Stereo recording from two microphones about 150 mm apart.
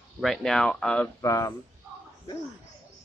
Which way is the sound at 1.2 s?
20° left (ahead or behind).